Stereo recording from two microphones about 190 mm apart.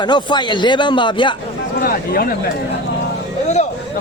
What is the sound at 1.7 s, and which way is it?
Speech, 50° left (ahead or behind).